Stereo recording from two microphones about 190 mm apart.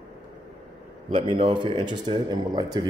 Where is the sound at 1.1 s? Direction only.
25° right (ahead or behind).